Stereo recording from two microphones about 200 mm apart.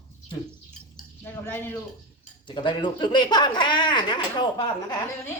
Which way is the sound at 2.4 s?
25° left (ahead or behind).